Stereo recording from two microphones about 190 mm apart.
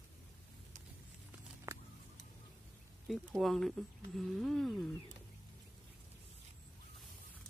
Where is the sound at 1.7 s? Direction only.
15° right (ahead or behind).